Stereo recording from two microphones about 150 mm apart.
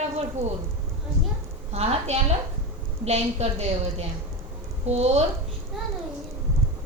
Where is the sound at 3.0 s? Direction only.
45° right (ahead or behind).